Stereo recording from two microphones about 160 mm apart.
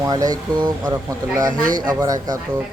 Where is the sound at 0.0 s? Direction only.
20° right (ahead or behind).